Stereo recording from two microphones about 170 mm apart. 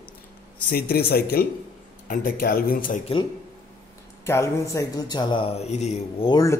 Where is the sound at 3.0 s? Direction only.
30° left (ahead or behind).